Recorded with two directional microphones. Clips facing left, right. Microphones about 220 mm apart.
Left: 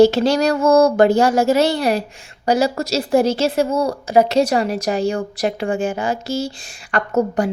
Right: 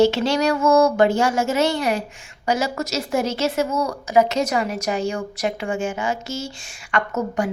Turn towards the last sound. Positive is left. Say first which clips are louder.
# left 5 dB
turn(degrees=35)  # may be behind; listen again after turning